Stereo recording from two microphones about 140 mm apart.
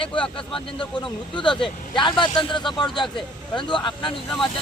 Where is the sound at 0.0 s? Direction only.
35° left (ahead or behind).